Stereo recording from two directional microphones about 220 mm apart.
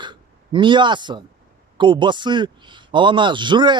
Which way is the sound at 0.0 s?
20° right (ahead or behind).